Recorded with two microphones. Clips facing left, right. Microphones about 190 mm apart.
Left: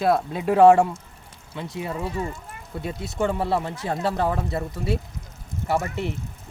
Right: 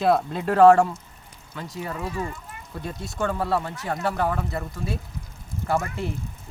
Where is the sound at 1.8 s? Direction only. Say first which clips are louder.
Left 1 dB; 25° left (ahead or behind).